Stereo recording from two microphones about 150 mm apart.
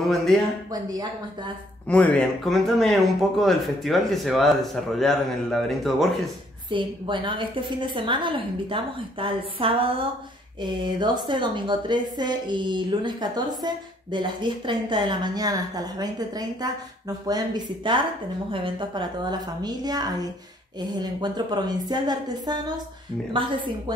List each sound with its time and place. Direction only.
1.9 s speech: 10° left (ahead or behind)
6.7 s a woman's voice: 35° right (ahead or behind)